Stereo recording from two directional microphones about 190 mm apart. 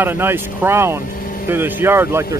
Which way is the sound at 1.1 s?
45° left (ahead or behind).